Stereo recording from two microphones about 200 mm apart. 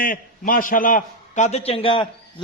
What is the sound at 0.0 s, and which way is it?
A man's voice, 45° left (ahead or behind).